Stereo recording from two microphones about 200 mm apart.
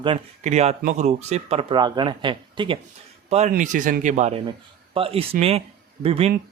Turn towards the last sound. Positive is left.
turn(degrees=-30)  # may be behind; listen again after turning